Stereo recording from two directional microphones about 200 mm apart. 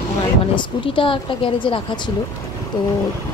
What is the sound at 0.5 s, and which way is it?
A woman's voice, 25° left (ahead or behind).